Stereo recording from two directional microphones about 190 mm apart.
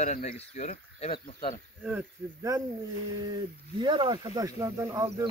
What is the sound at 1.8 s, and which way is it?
Speech, 15° right (ahead or behind).